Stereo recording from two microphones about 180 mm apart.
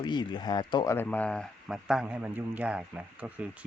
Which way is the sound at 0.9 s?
10° left (ahead or behind).